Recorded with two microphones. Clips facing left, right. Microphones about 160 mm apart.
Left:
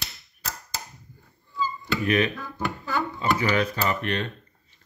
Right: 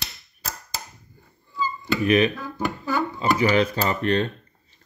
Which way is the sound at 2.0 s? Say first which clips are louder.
Right 4 dB; 20° right (ahead or behind).